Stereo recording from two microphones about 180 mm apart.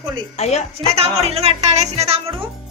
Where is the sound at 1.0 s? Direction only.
35° right (ahead or behind).